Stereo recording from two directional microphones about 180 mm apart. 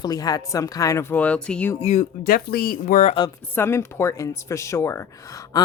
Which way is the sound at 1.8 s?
40° left (ahead or behind).